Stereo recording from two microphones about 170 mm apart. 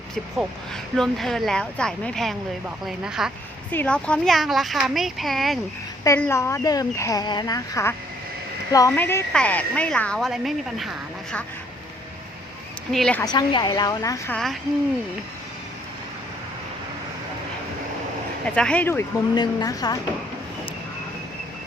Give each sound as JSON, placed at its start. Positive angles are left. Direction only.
{"t": 0.9, "sound": "speech", "side_deg": 0}
{"t": 3.7, "sound": "speech", "side_deg": 10}
{"t": 6.1, "sound": "speech", "side_deg": 15}
{"t": 12.9, "sound": "speech", "side_deg": 5}
{"t": 13.2, "sound": "speech", "side_deg": 25}
{"t": 14.3, "sound": "speech", "side_deg": 0}
{"t": 18.4, "sound": "speech", "side_deg": 5}
{"t": 19.3, "sound": "speech", "side_deg": 25}